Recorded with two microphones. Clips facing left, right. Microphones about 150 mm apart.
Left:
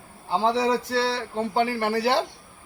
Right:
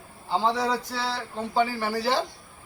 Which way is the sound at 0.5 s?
65° left (ahead or behind).